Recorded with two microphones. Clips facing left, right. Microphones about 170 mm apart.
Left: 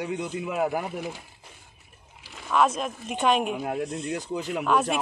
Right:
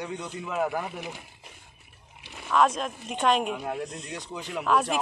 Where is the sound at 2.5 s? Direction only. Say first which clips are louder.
Even; 5° left (ahead or behind).